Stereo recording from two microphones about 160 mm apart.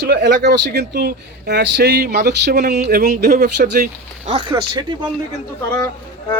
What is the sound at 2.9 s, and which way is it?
Speech, 70° right (ahead or behind).